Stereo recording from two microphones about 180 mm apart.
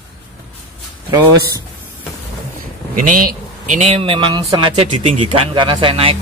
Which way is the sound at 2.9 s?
45° right (ahead or behind).